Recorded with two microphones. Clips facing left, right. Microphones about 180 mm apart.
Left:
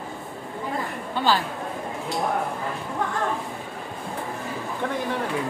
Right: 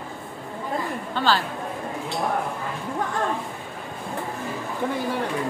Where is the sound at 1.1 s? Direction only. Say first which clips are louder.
Even; 15° left (ahead or behind).